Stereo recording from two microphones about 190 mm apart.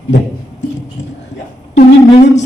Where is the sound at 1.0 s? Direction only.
40° left (ahead or behind).